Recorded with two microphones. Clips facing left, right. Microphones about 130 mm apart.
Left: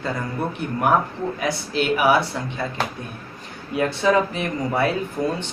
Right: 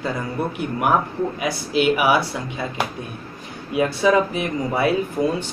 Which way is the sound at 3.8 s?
10° right (ahead or behind).